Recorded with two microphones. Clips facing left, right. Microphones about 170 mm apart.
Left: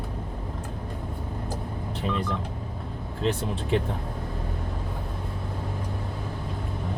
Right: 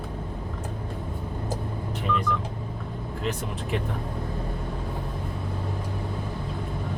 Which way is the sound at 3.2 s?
30° left (ahead or behind).